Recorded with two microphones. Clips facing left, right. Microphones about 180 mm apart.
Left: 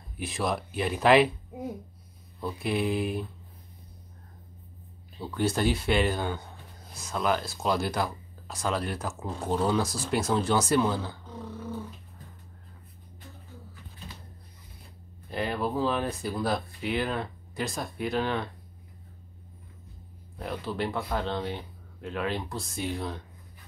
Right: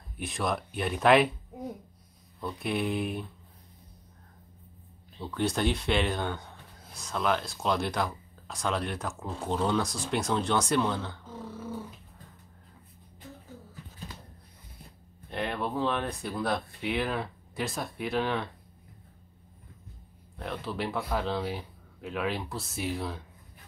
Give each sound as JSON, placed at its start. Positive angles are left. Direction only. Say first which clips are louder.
{"t": 0.2, "sound": "speech", "louder": "left 1 dB", "side_deg": 0}
{"t": 2.4, "sound": "speech", "louder": "left 2 dB", "side_deg": 0}
{"t": 5.1, "sound": "speech", "louder": "left 2 dB", "side_deg": 5}
{"t": 15.2, "sound": "speech", "louder": "left 2 dB", "side_deg": 0}
{"t": 20.3, "sound": "speech", "louder": "left 2 dB", "side_deg": 0}